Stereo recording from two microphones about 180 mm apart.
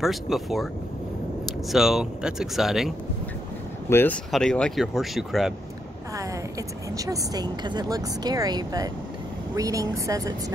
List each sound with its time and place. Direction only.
0.0 s speech: centre (ahead or behind)
1.7 s speech: centre (ahead or behind)
3.9 s speech: 10° left (ahead or behind)
7.0 s speech: 20° right (ahead or behind)